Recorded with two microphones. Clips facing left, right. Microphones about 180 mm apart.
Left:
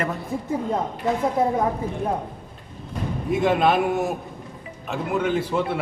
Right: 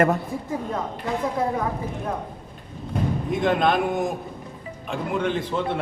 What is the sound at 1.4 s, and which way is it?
Speech, 25° left (ahead or behind).